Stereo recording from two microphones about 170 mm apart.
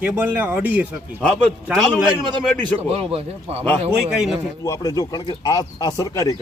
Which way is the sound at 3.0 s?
35° right (ahead or behind).